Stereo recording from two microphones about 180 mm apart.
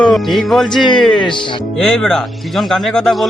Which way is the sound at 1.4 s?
25° left (ahead or behind).